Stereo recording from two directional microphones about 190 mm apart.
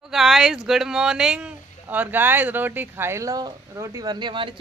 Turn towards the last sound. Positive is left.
turn(degrees=-25)  # may be behind; listen again after turning